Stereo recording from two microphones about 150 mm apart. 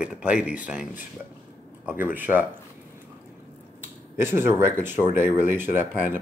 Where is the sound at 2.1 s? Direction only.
10° right (ahead or behind).